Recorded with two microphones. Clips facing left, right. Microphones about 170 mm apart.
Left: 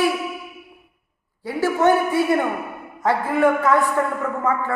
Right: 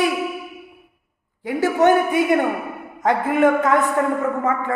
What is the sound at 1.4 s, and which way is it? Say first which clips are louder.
A woman's voice: right 2 dB; 20° right (ahead or behind).